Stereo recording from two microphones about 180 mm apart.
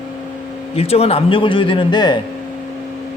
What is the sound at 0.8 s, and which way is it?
Speech, 35° left (ahead or behind).